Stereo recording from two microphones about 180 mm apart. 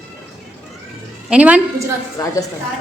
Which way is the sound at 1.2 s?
5° right (ahead or behind).